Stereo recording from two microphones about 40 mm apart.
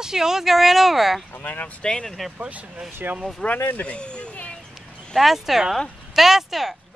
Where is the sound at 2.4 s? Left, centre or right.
Right.